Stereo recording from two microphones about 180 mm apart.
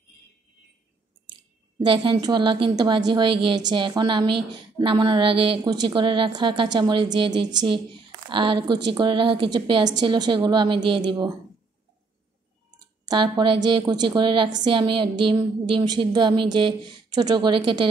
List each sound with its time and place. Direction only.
1.8 s a woman's voice: 25° right (ahead or behind)
12.7 s a woman's voice: 25° right (ahead or behind)